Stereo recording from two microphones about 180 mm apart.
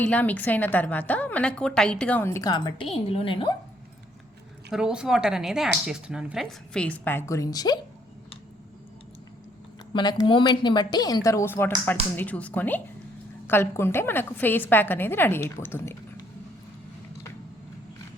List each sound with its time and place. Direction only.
0.0 s a woman's voice: 10° left (ahead or behind); by 3.5 s 30° left (ahead or behind)
4.7 s speech: 5° right (ahead or behind); by 7.8 s 20° left (ahead or behind)
9.9 s a woman's voice: 25° left (ahead or behind)